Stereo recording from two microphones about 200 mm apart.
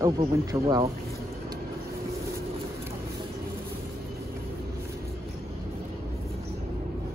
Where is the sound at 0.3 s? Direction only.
20° right (ahead or behind).